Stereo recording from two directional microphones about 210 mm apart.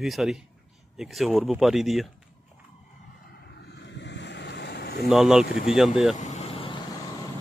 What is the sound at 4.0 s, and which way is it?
Vehicle, 55° left (ahead or behind).